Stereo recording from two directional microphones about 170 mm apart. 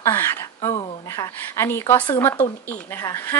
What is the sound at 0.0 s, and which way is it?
Speech, 15° left (ahead or behind).